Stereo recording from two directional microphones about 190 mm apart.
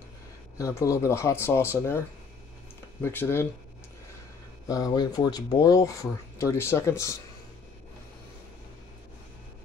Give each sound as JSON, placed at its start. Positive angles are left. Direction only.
{"t": 0.6, "sound": "speech", "side_deg": 15}
{"t": 4.6, "sound": "speech", "side_deg": 20}